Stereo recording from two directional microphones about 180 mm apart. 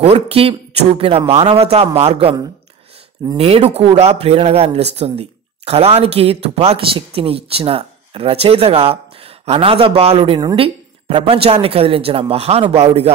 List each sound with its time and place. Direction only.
0.0 s speech: 35° right (ahead or behind)
3.3 s speech: 35° right (ahead or behind)